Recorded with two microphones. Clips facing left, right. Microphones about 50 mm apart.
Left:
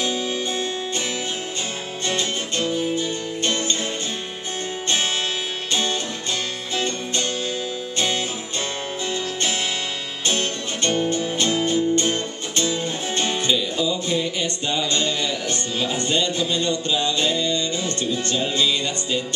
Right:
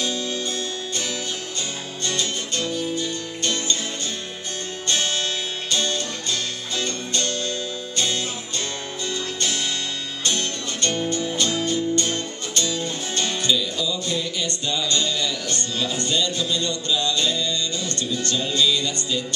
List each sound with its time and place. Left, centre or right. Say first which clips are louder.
0.0 s music: left 2 dB; centre
2.0 s music: left 2 dB; left
5.7 s music: left 1 dB; left
10.2 s music: left 2 dB; left